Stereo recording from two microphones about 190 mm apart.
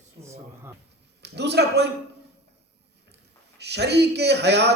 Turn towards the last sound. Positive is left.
turn(degrees=-60)  # may be behind; listen again after turning